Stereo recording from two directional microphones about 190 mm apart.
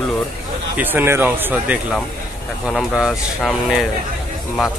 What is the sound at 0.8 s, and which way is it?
Speech, 10° right (ahead or behind).